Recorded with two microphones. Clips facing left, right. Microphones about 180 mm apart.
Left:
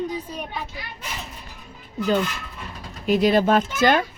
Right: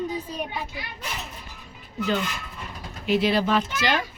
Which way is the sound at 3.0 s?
45° left (ahead or behind).